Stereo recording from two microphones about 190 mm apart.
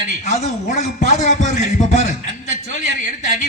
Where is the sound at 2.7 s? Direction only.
40° left (ahead or behind).